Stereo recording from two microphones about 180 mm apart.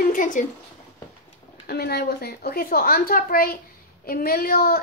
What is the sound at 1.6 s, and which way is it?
A woman's voice, 60° left (ahead or behind).